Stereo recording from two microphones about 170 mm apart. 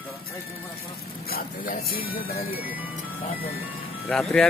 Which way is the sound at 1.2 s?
60° left (ahead or behind).